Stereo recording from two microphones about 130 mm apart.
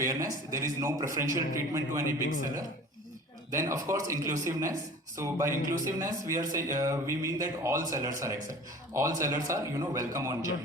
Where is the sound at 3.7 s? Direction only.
25° right (ahead or behind).